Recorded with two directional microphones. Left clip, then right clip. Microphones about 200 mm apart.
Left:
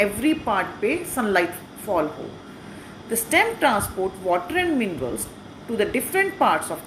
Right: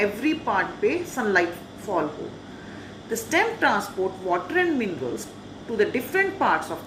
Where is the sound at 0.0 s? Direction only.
40° left (ahead or behind).